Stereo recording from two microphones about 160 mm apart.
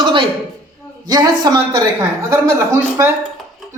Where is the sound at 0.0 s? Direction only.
30° right (ahead or behind).